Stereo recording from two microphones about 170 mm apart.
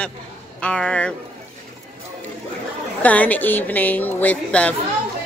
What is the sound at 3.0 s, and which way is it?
A woman's voice, 10° left (ahead or behind).